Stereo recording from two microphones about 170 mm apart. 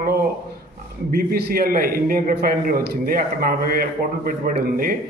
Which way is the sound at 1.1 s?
65° right (ahead or behind).